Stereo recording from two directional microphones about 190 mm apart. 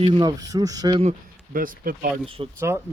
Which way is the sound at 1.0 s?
40° right (ahead or behind).